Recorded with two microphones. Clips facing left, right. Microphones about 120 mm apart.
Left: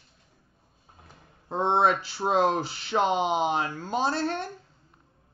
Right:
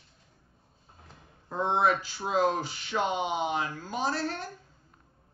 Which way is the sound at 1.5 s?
25° left (ahead or behind).